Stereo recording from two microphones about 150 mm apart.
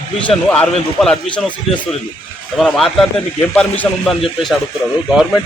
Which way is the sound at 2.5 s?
Centre (ahead or behind).